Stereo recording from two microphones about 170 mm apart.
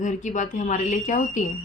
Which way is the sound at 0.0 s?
45° left (ahead or behind).